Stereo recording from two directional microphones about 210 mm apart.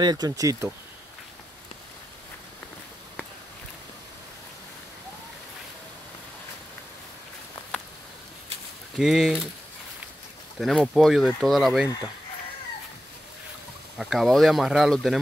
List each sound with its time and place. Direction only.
0.0 s speech: 20° right (ahead or behind)
8.9 s speech: centre (ahead or behind)
10.6 s speech: centre (ahead or behind)
13.9 s speech: centre (ahead or behind)